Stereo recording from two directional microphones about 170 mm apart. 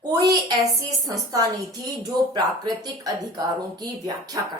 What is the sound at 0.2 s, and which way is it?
Speech, 20° right (ahead or behind).